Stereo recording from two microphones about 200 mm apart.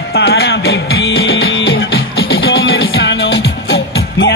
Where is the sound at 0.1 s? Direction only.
55° left (ahead or behind).